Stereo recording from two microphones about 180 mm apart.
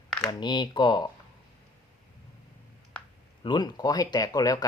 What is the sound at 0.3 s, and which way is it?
Speech, 25° left (ahead or behind).